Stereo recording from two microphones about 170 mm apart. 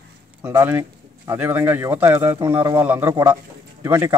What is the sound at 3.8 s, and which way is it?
Speech, 10° right (ahead or behind).